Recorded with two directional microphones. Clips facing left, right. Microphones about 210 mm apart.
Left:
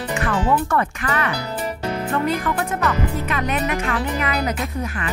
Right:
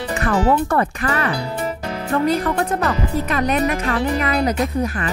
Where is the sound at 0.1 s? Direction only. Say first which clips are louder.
Right 3 dB; 35° right (ahead or behind).